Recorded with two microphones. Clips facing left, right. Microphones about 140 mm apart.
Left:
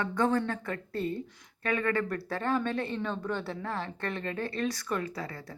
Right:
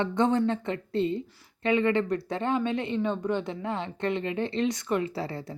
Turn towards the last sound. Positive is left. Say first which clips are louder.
# right 5 dB
turn(degrees=-25)  # may be behind; listen again after turning